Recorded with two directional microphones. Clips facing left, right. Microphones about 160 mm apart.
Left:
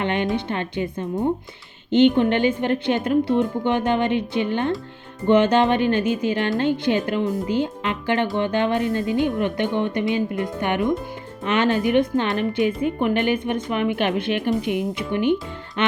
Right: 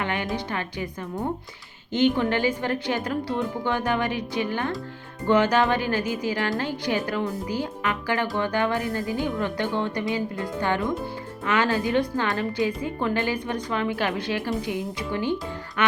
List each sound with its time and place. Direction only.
0.0 s a woman's voice: 20° left (ahead or behind)